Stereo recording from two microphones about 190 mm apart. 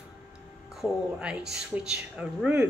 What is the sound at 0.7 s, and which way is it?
A woman's voice, 5° right (ahead or behind).